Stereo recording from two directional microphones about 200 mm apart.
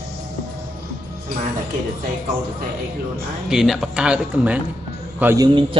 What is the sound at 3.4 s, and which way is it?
A man's voice, centre (ahead or behind).